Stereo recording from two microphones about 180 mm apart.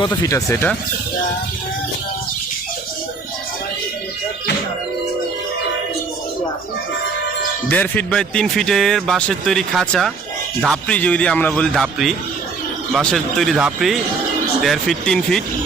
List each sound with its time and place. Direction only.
0.0 s speech: 20° left (ahead or behind)
7.7 s speech: 10° left (ahead or behind)